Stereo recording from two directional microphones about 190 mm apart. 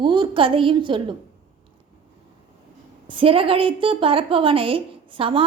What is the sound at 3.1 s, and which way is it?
A woman's voice, 30° right (ahead or behind).